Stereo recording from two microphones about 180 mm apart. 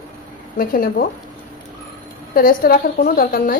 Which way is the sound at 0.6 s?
55° left (ahead or behind).